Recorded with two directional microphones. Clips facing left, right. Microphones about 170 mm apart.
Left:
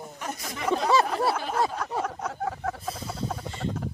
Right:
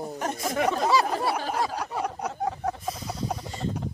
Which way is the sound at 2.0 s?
15° right (ahead or behind).